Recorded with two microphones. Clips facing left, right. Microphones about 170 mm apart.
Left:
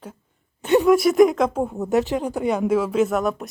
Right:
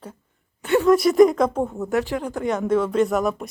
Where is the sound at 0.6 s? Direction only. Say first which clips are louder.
Left 2 dB; 20° left (ahead or behind).